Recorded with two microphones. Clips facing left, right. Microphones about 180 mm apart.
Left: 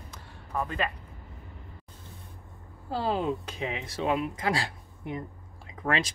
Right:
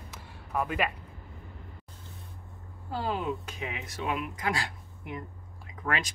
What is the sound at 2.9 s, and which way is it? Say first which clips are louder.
Speech: left 3 dB; 30° left (ahead or behind).